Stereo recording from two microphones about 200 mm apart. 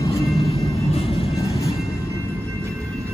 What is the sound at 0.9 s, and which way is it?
Train, 30° left (ahead or behind).